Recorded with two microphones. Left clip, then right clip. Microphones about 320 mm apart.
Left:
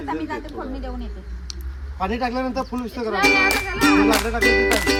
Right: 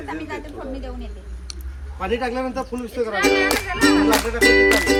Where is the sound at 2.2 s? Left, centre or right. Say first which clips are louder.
Left 1 dB; centre.